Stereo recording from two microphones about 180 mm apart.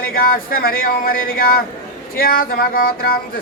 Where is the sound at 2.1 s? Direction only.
55° left (ahead or behind).